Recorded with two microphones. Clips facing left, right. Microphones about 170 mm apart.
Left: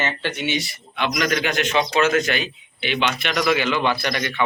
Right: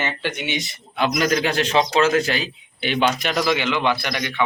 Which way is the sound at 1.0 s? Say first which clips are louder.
Right 2 dB; 35° right (ahead or behind).